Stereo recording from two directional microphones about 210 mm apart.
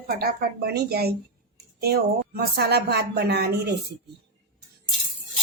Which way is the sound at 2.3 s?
50° right (ahead or behind).